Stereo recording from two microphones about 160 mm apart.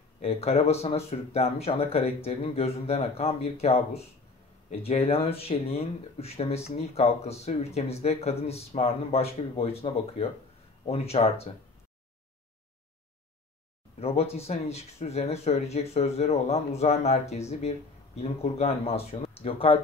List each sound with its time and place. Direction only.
0.2 s speech: 40° left (ahead or behind)
13.9 s speech: 40° left (ahead or behind)